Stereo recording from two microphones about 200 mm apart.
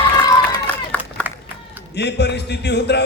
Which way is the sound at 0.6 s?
10° left (ahead or behind).